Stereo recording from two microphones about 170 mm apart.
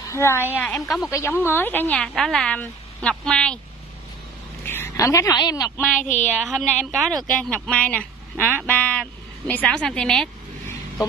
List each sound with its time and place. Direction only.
0.1 s speech: 15° left (ahead or behind)
0.8 s a woman's voice: centre (ahead or behind)
1.1 s speech: 15° left (ahead or behind)
4.6 s a woman's voice: 15° left (ahead or behind)
5.9 s speech: 45° left (ahead or behind)
6.4 s a woman's voice: 5° left (ahead or behind)